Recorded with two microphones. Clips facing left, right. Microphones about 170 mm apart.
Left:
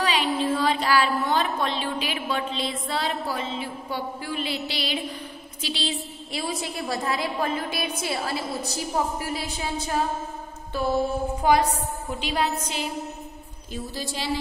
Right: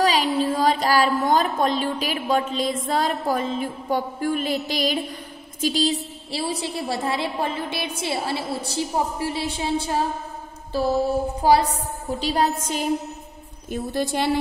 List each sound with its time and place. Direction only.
0.0 s child singing: 40° right (ahead or behind)
0.4 s a woman's voice: 40° right (ahead or behind)
10.7 s mantra: 35° right (ahead or behind)
11.4 s a woman's voice: 35° right (ahead or behind)
13.7 s a woman's voice: 55° right (ahead or behind)